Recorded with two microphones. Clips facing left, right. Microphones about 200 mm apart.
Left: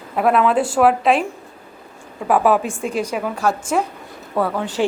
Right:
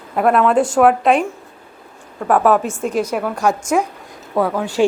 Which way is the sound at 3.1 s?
Centre (ahead or behind).